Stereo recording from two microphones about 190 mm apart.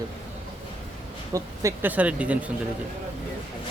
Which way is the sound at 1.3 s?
15° right (ahead or behind).